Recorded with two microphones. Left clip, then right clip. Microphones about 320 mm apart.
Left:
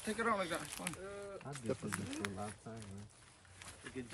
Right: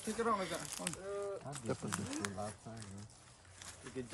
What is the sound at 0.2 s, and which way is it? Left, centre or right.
Speech, centre.